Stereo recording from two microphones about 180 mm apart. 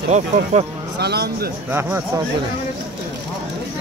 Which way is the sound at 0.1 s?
35° right (ahead or behind).